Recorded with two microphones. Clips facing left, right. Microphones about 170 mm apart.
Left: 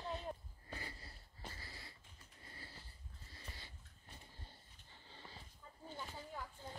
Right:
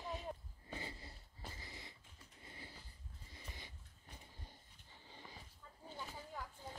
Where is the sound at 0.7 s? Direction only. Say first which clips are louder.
Right 2 dB; 20° right (ahead or behind).